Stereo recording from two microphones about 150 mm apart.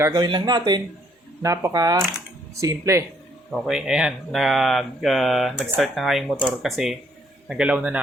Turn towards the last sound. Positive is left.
turn(degrees=-5)  # may be behind; listen again after turning